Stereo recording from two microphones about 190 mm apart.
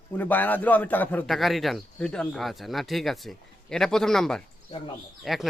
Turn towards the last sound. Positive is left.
turn(degrees=0)  # may be behind; listen again after turning